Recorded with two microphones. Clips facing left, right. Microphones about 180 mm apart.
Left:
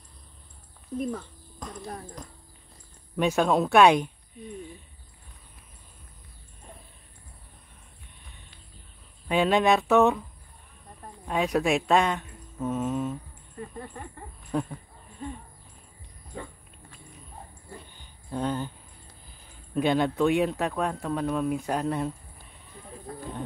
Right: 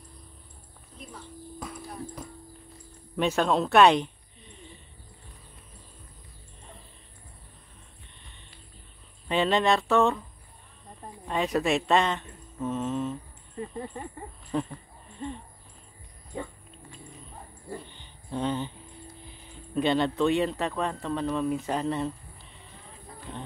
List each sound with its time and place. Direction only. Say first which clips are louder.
1.6 s clip-clop: left 2 dB; 5° right (ahead or behind)
3.2 s speech: left 2 dB; 5° left (ahead or behind)
9.3 s speech: left 2 dB; 10° left (ahead or behind)
11.2 s speech: left 1 dB; 5° left (ahead or behind)
13.6 s speech: right 3 dB; 15° right (ahead or behind)
14.5 s a sound: left 1 dB; 5° left (ahead or behind)
18.3 s speech: even; 5° left (ahead or behind)
19.7 s speech: left 1 dB; 10° left (ahead or behind)